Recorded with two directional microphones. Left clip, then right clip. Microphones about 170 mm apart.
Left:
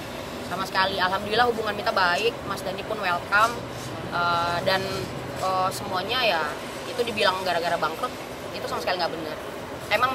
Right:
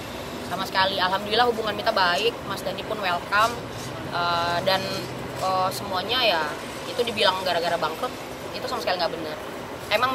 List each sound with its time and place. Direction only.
0.6 s speech: 15° left (ahead or behind)